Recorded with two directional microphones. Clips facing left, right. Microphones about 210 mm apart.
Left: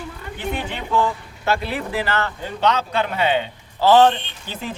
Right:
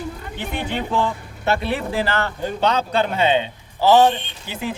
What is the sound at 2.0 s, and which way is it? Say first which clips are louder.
A man's voice: right 2 dB; 35° right (ahead or behind).